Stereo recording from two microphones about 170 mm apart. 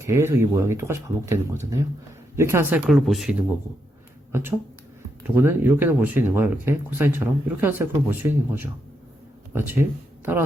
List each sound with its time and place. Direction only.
0.0 s speech: 15° right (ahead or behind)
4.3 s speech: 15° right (ahead or behind)